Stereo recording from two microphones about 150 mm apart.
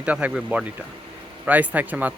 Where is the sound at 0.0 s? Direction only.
10° right (ahead or behind).